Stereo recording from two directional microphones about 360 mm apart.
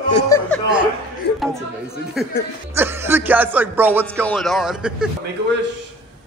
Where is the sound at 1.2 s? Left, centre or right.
Left.